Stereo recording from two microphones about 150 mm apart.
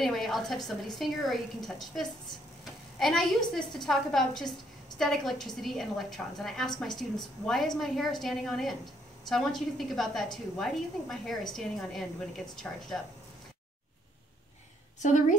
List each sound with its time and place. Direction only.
0.0 s a woman's voice: centre (ahead or behind)
15.0 s a woman's voice: 55° left (ahead or behind)